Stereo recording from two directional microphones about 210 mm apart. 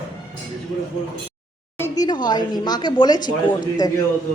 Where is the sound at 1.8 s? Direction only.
20° left (ahead or behind).